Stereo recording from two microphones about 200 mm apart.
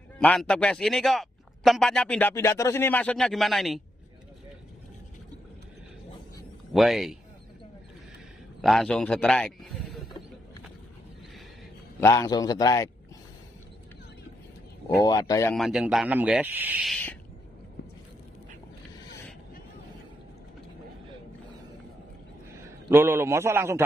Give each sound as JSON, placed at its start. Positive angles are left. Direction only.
{"t": 0.2, "sound": "speech", "side_deg": 5}
{"t": 6.7, "sound": "speech", "side_deg": 0}
{"t": 8.5, "sound": "speech", "side_deg": 0}
{"t": 12.0, "sound": "a man's voice", "side_deg": 15}
{"t": 15.0, "sound": "speech", "side_deg": 20}
{"t": 15.5, "sound": "speech", "side_deg": 0}
{"t": 16.9, "sound": "a man's voice", "side_deg": 10}
{"t": 22.8, "sound": "a man's voice", "side_deg": -10}